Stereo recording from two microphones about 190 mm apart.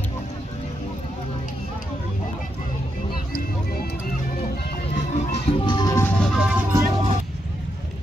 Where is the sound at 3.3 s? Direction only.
55° left (ahead or behind).